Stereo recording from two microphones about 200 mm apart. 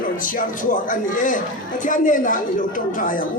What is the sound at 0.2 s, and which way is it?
Speech, 40° left (ahead or behind).